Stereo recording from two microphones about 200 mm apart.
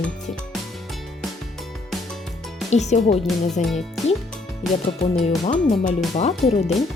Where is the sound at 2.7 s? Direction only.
35° left (ahead or behind).